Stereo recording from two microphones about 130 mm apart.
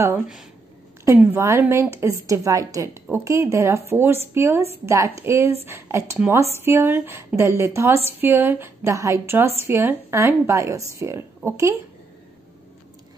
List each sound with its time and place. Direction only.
1.0 s a woman's voice: 20° right (ahead or behind)